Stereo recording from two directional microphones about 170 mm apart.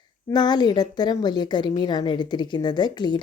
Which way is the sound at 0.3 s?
25° left (ahead or behind).